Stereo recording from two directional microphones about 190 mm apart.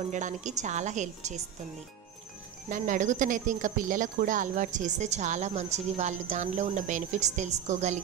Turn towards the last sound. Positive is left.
turn(degrees=-35)  # may be behind; listen again after turning